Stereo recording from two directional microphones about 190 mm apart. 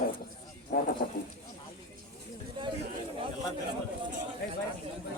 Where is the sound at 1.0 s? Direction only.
55° left (ahead or behind).